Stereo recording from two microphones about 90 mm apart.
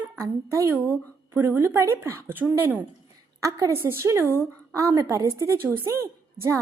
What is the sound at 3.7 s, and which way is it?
A woman's voice, 25° right (ahead or behind).